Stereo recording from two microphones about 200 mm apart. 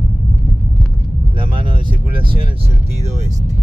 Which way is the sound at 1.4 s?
25° right (ahead or behind).